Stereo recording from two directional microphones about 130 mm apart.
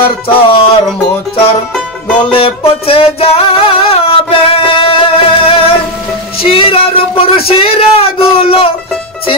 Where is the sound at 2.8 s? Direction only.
45° left (ahead or behind).